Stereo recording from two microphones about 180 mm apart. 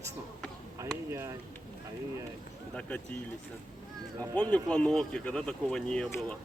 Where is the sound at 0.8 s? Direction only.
15° right (ahead or behind).